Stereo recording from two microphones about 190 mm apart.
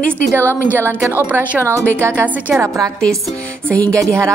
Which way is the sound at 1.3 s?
10° right (ahead or behind).